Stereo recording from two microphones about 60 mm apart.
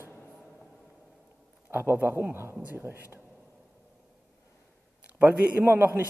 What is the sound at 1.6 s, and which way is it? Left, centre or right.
A man's voice, right.